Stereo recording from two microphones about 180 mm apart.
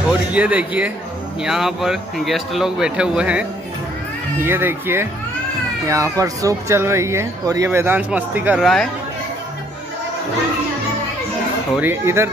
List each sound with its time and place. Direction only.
0.1 s speech: 5° right (ahead or behind)
11.7 s speech: 10° right (ahead or behind)